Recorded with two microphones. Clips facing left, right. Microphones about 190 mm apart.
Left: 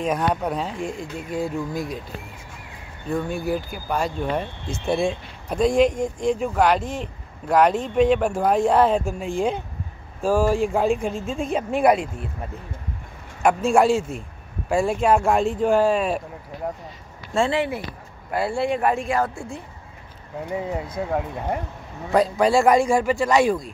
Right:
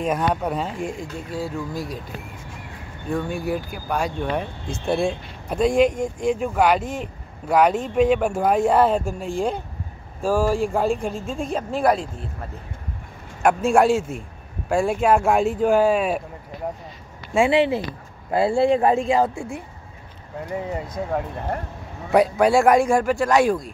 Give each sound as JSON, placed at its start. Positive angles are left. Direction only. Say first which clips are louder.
{"t": 0.0, "sound": "speech", "louder": "even", "side_deg": 0}
{"t": 3.1, "sound": "speech", "louder": "even", "side_deg": 5}
{"t": 10.2, "sound": "speech", "louder": "left 1 dB", "side_deg": -10}
{"t": 10.7, "sound": "speech", "louder": "left 1 dB", "side_deg": 5}
{"t": 13.4, "sound": "speech", "louder": "right 1 dB", "side_deg": 0}
{"t": 17.3, "sound": "speech", "louder": "right 4 dB", "side_deg": -15}
{"t": 20.4, "sound": "speech", "louder": "left 1 dB", "side_deg": 5}
{"t": 22.1, "sound": "speech", "louder": "right 2 dB", "side_deg": -5}